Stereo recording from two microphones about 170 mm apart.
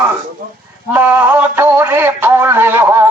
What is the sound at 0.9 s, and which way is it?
Music, 10° right (ahead or behind).